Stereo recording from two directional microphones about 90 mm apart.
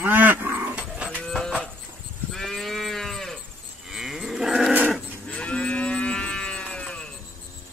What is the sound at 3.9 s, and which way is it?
Cattle, 5° right (ahead or behind).